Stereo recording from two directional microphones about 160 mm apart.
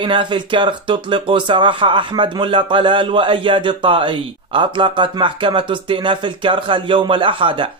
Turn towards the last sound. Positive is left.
turn(degrees=-30)  # may be behind; listen again after turning